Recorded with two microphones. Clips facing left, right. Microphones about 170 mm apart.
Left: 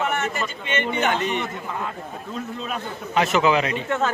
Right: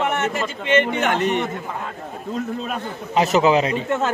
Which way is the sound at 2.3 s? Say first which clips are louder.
Right 5 dB; 35° right (ahead or behind).